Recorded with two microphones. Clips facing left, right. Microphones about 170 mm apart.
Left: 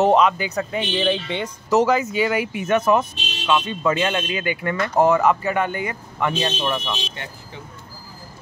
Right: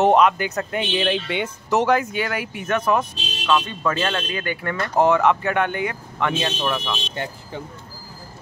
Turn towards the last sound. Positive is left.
turn(degrees=0)  # may be behind; listen again after turning